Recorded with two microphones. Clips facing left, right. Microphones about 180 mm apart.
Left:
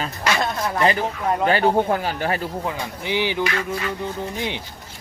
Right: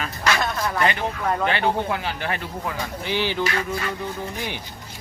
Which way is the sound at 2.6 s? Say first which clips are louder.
Left 1 dB; 15° left (ahead or behind).